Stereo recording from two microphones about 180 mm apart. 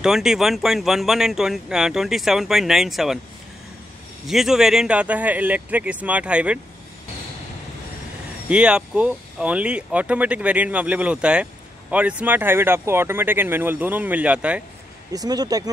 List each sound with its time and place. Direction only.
0.0 s speech: 5° right (ahead or behind)
4.3 s speech: centre (ahead or behind)
8.5 s speech: 5° right (ahead or behind)
15.1 s speech: 20° right (ahead or behind)